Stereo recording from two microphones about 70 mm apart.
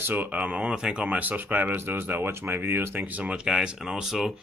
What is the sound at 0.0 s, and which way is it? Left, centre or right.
Speech, right.